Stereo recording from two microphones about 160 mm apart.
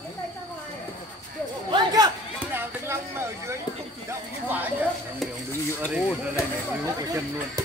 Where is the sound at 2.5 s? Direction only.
15° right (ahead or behind).